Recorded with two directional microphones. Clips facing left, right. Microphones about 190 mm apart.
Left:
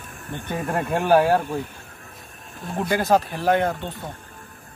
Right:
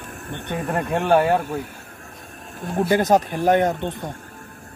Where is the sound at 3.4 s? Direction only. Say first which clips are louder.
Right 3 dB; 20° right (ahead or behind).